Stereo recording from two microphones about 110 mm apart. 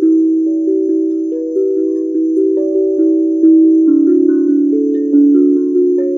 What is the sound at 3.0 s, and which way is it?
Wind chime, 20° right (ahead or behind).